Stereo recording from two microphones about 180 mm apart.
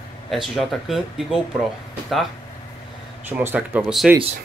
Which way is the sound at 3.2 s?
10° right (ahead or behind).